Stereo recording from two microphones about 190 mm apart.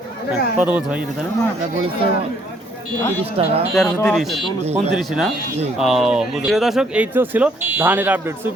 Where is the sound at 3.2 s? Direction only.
30° right (ahead or behind).